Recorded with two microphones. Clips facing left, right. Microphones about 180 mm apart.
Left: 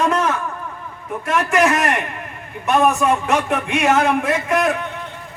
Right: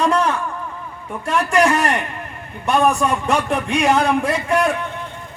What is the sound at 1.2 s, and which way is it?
A man's voice, 35° right (ahead or behind).